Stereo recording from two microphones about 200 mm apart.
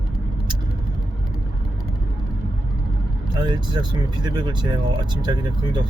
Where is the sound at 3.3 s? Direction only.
20° right (ahead or behind).